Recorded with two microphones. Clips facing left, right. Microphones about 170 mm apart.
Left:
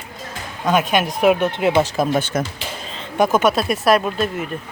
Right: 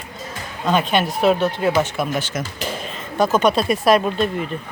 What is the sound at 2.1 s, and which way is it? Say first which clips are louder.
Speech: left 4 dB; 55° left (ahead or behind).